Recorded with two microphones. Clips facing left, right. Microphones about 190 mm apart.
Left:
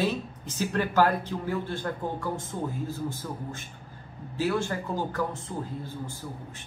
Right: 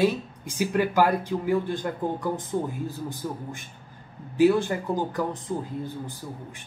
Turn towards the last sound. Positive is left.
turn(degrees=-15)  # may be behind; listen again after turning